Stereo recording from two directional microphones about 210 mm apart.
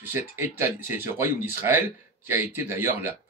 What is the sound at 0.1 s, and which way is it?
Speech, 10° right (ahead or behind).